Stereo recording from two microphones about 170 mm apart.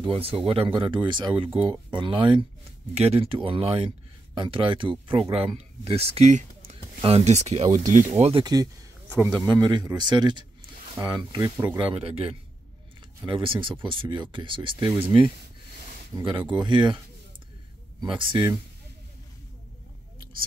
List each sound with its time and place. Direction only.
0.0 s speech: 35° right (ahead or behind)
8.1 s speech: 35° right (ahead or behind)
16.1 s speech: 20° right (ahead or behind)
18.0 s speech: 30° right (ahead or behind)